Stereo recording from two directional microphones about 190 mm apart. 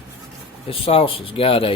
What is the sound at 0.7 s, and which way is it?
Speech, 30° left (ahead or behind).